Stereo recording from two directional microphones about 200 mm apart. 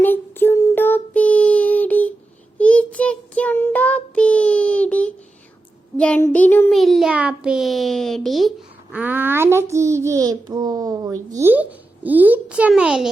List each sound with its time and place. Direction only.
0.0 s child singing: 10° left (ahead or behind)